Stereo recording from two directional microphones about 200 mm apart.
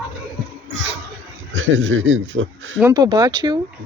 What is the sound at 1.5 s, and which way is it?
Speech, 75° right (ahead or behind).